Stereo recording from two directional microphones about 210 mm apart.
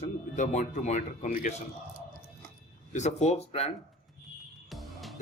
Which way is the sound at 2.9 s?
35° left (ahead or behind).